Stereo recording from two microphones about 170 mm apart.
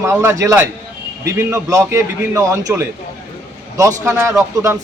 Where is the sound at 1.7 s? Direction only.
15° right (ahead or behind).